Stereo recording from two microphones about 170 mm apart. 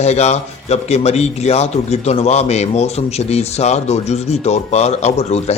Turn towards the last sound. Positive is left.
turn(degrees=40)  # may be behind; listen again after turning